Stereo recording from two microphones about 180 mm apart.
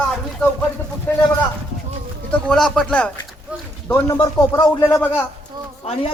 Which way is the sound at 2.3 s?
5° left (ahead or behind).